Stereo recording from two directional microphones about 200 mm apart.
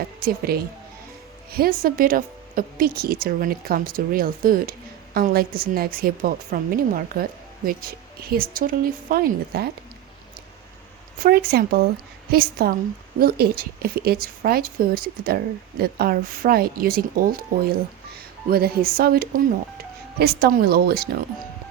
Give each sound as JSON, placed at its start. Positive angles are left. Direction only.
{"t": 0.2, "sound": "a woman's voice", "side_deg": -50}
{"t": 11.2, "sound": "a woman's voice", "side_deg": -50}
{"t": 18.4, "sound": "a woman's voice", "side_deg": -50}